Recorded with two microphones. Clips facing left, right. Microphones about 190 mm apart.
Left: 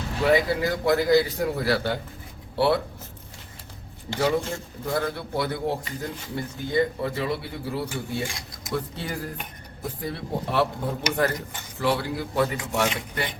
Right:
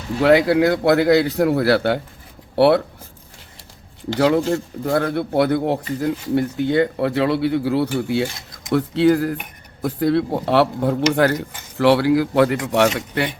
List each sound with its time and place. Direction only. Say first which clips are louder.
0.2 s a man's voice: right 7 dB; 70° right (ahead or behind)
4.2 s a man's voice: right 8 dB; 70° right (ahead or behind); by 12.5 s 85° right
12.6 s a man's voice: right 8 dB; 75° right (ahead or behind)